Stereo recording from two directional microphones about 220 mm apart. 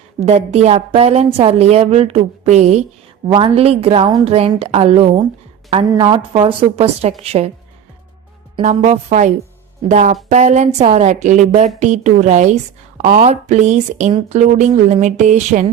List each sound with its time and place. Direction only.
0.3 s a woman's voice: 30° right (ahead or behind)
8.5 s speech: 30° right (ahead or behind)